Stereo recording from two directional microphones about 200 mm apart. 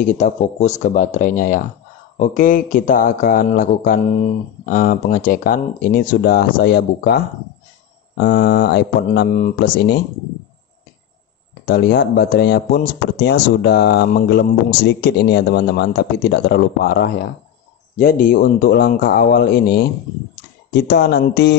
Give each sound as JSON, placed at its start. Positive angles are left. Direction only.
{"t": 0.0, "sound": "a man's voice", "side_deg": 35}
{"t": 9.3, "sound": "a man's voice", "side_deg": 35}
{"t": 11.6, "sound": "speech", "side_deg": 50}